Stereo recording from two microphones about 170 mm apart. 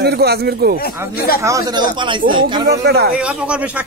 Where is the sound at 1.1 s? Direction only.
65° left (ahead or behind).